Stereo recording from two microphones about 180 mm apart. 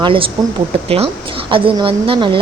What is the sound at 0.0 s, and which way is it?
A woman's voice, 30° right (ahead or behind).